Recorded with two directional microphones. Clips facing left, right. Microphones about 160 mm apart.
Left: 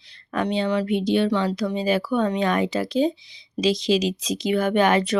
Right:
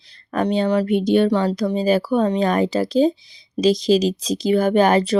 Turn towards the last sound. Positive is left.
turn(degrees=-35)  # may be behind; listen again after turning